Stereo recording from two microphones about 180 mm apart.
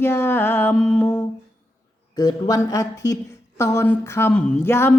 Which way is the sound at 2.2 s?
20° left (ahead or behind).